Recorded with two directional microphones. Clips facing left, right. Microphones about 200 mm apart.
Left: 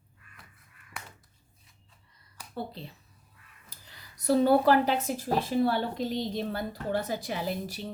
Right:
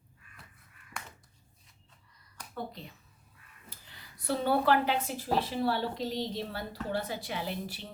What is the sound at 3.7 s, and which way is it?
Speech, 40° left (ahead or behind).